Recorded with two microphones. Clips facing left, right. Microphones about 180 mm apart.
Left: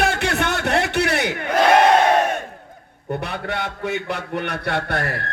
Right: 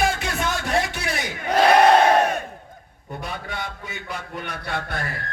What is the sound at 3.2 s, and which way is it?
A man's voice, 65° left (ahead or behind).